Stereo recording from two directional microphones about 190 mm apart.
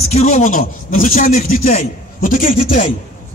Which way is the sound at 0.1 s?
35° left (ahead or behind).